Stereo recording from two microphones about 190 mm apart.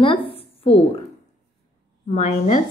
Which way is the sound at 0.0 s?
30° left (ahead or behind).